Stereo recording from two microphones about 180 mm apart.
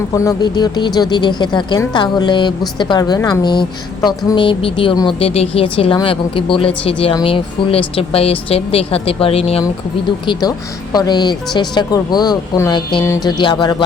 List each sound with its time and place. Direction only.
0.3 s a woman's voice: 25° left (ahead or behind)
10.9 s a woman's voice: 20° left (ahead or behind)